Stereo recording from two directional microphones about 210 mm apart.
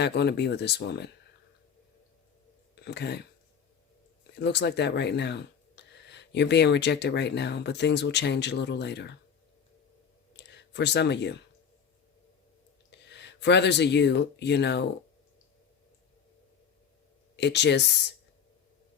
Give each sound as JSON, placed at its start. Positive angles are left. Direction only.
{"t": 0.0, "sound": "speech", "side_deg": 55}
{"t": 2.8, "sound": "speech", "side_deg": 50}
{"t": 4.4, "sound": "speech", "side_deg": 55}
{"t": 10.3, "sound": "a sound", "side_deg": 55}
{"t": 12.9, "sound": "speech", "side_deg": 55}
{"t": 17.3, "sound": "speech", "side_deg": 55}